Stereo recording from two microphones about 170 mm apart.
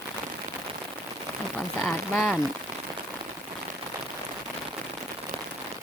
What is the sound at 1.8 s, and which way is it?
Speech, 5° left (ahead or behind).